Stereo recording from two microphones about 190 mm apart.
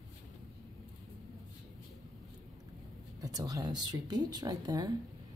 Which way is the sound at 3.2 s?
20° right (ahead or behind).